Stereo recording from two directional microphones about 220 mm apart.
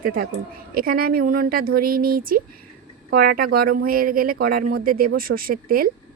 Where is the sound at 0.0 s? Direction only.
40° right (ahead or behind).